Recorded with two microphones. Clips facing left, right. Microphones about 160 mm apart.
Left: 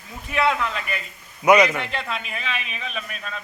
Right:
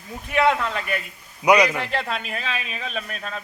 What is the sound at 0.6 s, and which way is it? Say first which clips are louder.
Speech: right 1 dB; 50° right (ahead or behind).